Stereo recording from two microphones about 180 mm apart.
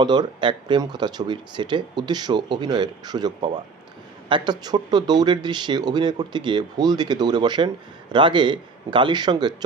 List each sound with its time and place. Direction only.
0.0 s speech: 25° right (ahead or behind)